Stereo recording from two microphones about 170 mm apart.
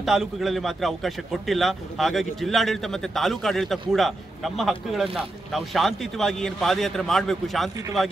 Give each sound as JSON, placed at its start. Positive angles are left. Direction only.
{"t": 0.0, "sound": "a man's voice", "side_deg": 0}